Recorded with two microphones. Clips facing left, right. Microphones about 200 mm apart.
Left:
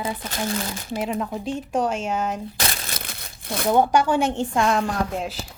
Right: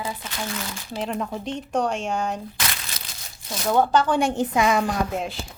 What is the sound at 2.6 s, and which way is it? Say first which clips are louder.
Crumpling: left 3 dB; 40° left (ahead or behind).